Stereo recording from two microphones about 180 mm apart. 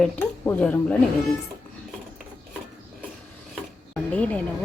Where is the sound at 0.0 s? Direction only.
10° left (ahead or behind).